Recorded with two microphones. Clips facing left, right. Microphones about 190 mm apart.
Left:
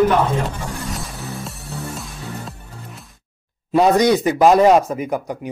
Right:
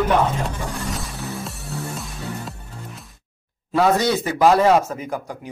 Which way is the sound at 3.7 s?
20° left (ahead or behind).